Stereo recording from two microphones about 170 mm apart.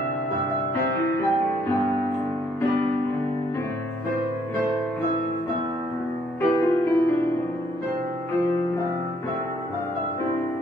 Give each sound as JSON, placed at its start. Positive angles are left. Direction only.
{"t": 6.4, "sound": "music", "side_deg": 15}